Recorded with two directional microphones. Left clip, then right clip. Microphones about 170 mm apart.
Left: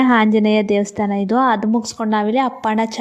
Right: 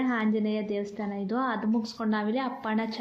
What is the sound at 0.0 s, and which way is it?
A woman's voice, 60° left (ahead or behind).